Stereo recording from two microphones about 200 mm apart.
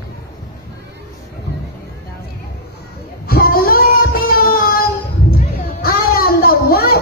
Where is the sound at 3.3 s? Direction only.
50° left (ahead or behind).